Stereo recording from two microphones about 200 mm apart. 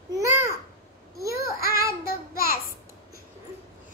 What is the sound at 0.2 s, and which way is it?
Babbling, 15° right (ahead or behind).